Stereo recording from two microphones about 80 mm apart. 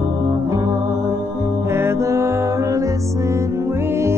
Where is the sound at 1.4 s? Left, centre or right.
Right.